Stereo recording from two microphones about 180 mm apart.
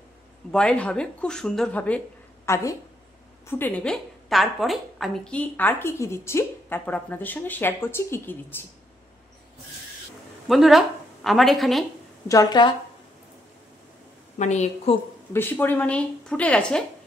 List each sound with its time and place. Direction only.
0.5 s a woman's voice: 5° left (ahead or behind)
10.5 s a woman's voice: centre (ahead or behind)
12.3 s a woman's voice: 20° left (ahead or behind)
14.4 s a woman's voice: 40° left (ahead or behind)
15.3 s a woman's voice: 10° left (ahead or behind)